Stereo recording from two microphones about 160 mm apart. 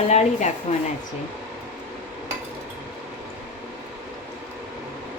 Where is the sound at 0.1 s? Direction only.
45° left (ahead or behind).